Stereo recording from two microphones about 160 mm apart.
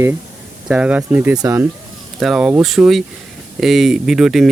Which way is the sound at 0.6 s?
5° right (ahead or behind).